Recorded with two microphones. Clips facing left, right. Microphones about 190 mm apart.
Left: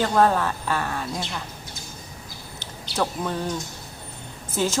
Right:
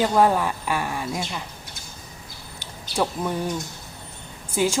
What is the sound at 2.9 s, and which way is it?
Speech, 15° right (ahead or behind).